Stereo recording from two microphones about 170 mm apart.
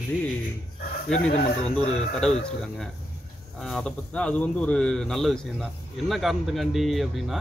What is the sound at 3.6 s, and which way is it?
Speech, centre (ahead or behind).